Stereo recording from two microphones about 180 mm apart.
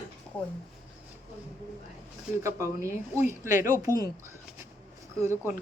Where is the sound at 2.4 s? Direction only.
15° right (ahead or behind).